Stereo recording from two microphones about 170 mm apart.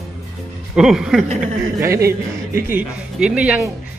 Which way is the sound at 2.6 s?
10° right (ahead or behind).